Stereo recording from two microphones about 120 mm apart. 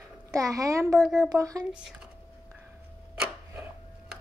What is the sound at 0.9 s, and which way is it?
Speech, 5° right (ahead or behind).